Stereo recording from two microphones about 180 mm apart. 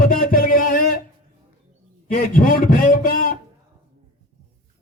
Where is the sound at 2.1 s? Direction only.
50° left (ahead or behind).